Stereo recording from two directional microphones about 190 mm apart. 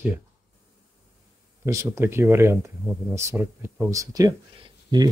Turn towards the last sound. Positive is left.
turn(degrees=-20)  # may be behind; listen again after turning